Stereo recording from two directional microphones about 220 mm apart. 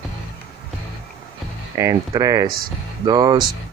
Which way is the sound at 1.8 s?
15° right (ahead or behind).